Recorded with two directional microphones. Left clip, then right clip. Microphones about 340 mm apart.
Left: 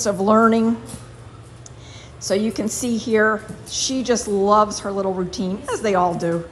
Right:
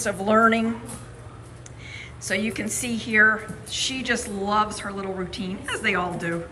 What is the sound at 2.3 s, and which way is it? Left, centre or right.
A woman's voice, centre.